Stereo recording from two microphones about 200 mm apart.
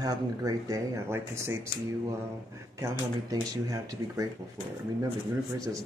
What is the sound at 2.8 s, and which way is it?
Speech, 15° right (ahead or behind).